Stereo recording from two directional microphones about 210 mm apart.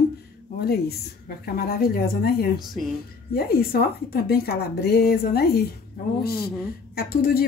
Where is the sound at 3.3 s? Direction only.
45° left (ahead or behind).